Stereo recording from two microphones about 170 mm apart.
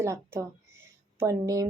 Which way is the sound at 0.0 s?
15° right (ahead or behind).